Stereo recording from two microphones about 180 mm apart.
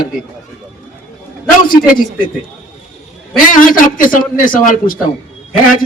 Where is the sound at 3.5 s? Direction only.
50° left (ahead or behind).